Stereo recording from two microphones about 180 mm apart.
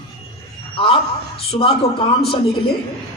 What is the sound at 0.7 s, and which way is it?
A man's voice, 30° left (ahead or behind).